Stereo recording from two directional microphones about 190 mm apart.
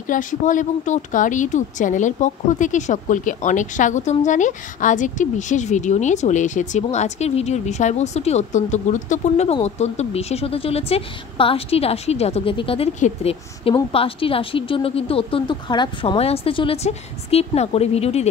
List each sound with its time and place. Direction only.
0.0 s speech: 45° left (ahead or behind)